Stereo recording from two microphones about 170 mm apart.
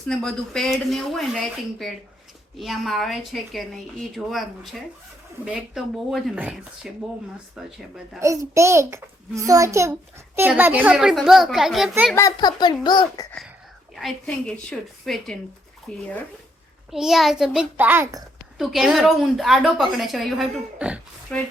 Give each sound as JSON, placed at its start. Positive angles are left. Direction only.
{"t": 0.1, "sound": "a woman's voice", "side_deg": 5}
{"t": 2.6, "sound": "a woman's voice", "side_deg": 0}
{"t": 8.2, "sound": "a child's voice", "side_deg": -20}
{"t": 12.1, "sound": "a child's voice", "side_deg": 20}
{"t": 14.0, "sound": "a woman's voice", "side_deg": 5}
{"t": 18.5, "sound": "a woman's voice", "side_deg": 0}